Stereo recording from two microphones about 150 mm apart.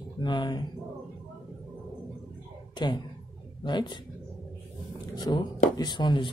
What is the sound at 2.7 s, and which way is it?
Speech, 30° left (ahead or behind).